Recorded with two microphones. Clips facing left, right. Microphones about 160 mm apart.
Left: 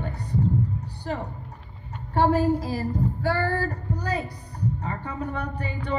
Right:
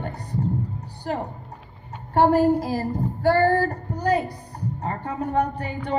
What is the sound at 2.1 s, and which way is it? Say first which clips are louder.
Speech: right 4 dB; 55° right (ahead or behind).